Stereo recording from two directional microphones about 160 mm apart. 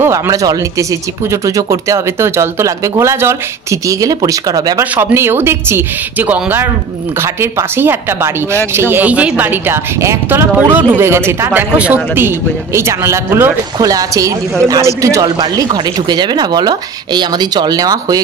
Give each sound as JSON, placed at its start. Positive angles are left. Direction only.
{"t": 0.0, "sound": "a woman's voice", "side_deg": -20}